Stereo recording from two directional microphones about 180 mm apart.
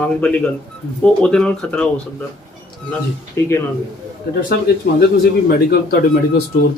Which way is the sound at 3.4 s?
15° left (ahead or behind).